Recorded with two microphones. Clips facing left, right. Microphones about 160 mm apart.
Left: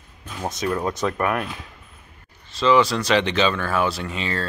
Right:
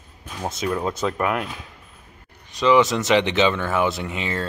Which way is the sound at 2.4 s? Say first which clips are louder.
Right 1 dB; 15° right (ahead or behind).